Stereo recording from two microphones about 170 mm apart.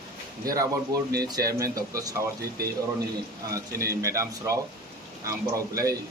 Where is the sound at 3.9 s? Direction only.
20° right (ahead or behind).